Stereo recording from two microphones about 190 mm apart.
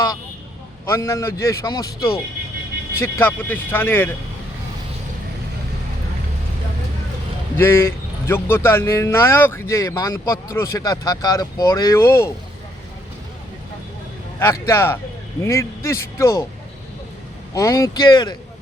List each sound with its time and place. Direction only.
0.9 s speech: 15° left (ahead or behind)
7.5 s speech: 10° left (ahead or behind)
14.3 s speech: 15° left (ahead or behind)
17.5 s speech: 15° left (ahead or behind)